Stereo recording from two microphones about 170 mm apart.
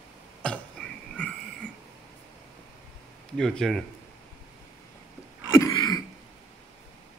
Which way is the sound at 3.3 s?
5° left (ahead or behind).